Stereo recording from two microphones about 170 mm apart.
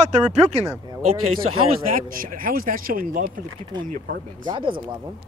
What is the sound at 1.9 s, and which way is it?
Speech, 55° right (ahead or behind).